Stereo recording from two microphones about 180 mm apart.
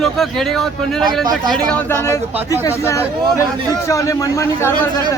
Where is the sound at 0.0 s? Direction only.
Centre (ahead or behind); by 4.7 s 15° left (ahead or behind).